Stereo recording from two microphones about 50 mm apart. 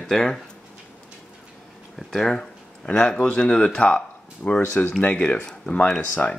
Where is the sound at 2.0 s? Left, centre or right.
Centre.